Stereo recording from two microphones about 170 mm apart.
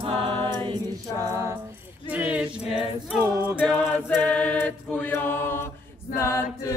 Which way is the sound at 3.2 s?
20° right (ahead or behind).